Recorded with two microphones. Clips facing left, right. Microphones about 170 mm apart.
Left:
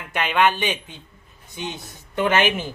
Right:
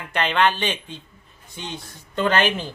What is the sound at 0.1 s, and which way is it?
Speech, 10° left (ahead or behind).